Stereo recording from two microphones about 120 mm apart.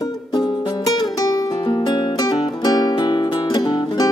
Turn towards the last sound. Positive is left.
turn(degrees=40)  # may be behind; listen again after turning